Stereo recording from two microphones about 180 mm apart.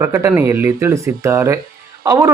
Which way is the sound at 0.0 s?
15° right (ahead or behind).